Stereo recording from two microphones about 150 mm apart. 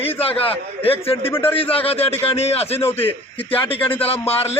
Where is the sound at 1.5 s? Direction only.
40° left (ahead or behind).